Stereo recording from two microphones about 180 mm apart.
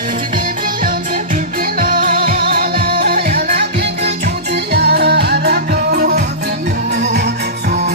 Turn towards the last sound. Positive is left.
turn(degrees=-65)  # may be behind; listen again after turning